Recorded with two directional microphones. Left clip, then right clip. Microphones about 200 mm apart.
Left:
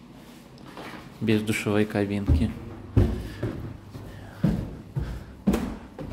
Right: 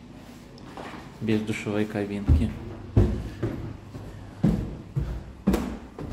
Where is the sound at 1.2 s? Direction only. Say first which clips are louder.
Left 3 dB; 30° left (ahead or behind).